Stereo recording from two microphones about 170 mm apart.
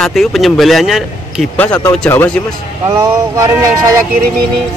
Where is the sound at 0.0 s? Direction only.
Centre (ahead or behind).